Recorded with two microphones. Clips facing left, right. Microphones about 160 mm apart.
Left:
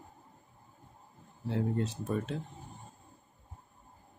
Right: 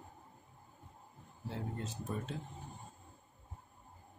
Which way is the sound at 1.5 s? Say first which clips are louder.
Left 10 dB; 75° left (ahead or behind).